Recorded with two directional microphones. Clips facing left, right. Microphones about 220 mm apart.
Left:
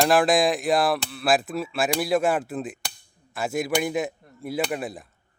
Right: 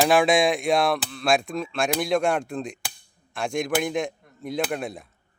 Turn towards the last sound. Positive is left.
turn(degrees=0)  # may be behind; listen again after turning